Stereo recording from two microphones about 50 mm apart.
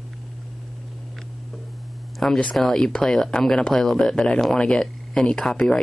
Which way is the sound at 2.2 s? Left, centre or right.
Centre.